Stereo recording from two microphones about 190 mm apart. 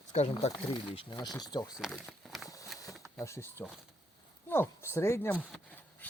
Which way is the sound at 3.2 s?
15° left (ahead or behind).